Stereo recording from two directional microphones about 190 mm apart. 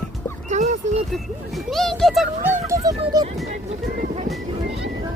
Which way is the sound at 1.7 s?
Centre (ahead or behind).